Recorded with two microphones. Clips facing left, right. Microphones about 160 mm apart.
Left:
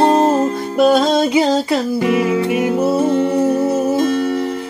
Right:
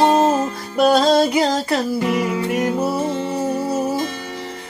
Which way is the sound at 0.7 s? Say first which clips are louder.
Left 1 dB; centre (ahead or behind).